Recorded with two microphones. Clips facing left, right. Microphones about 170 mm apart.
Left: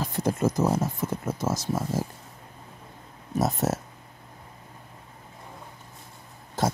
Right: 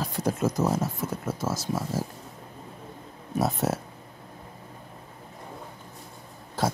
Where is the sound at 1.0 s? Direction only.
10° right (ahead or behind).